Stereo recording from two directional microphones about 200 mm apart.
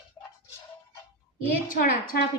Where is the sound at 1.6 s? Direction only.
45° left (ahead or behind).